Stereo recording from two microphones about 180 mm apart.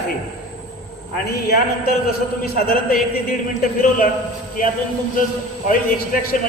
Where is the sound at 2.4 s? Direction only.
55° left (ahead or behind).